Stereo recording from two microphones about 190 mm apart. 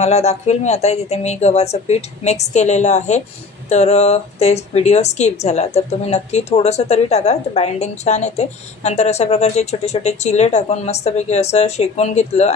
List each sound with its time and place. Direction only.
0.0 s speech: 35° left (ahead or behind)